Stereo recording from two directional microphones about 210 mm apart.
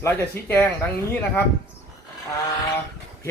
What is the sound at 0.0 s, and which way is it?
Speech, 10° left (ahead or behind).